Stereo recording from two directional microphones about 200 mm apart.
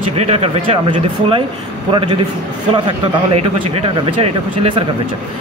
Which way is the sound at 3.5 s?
25° right (ahead or behind).